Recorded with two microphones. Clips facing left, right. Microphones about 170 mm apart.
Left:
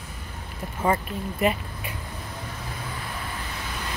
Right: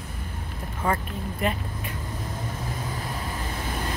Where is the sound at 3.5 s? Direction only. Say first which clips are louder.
Right 4 dB; 50° right (ahead or behind).